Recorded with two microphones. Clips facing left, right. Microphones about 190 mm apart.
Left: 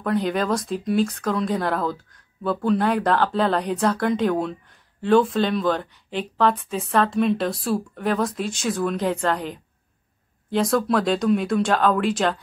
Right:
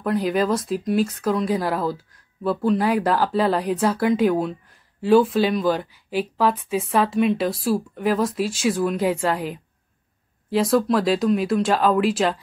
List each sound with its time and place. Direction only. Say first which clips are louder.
0.0 s speech: right 2 dB; 5° right (ahead or behind)